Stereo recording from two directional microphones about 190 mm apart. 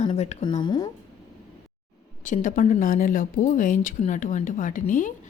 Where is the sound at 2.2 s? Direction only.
45° left (ahead or behind).